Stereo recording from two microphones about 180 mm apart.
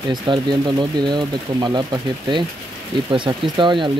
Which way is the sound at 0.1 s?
25° right (ahead or behind).